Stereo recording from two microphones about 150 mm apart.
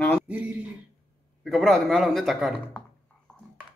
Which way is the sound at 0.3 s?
10° right (ahead or behind).